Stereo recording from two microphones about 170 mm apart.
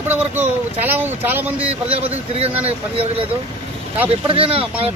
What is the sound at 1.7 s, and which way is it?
Speech, 35° right (ahead or behind).